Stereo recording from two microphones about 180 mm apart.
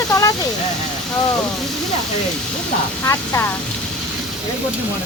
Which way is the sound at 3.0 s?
15° left (ahead or behind).